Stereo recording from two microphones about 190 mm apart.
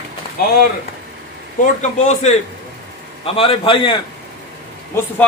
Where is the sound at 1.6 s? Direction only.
40° left (ahead or behind).